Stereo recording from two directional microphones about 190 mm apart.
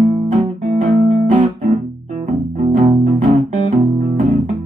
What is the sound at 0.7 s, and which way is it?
Music, 40° right (ahead or behind).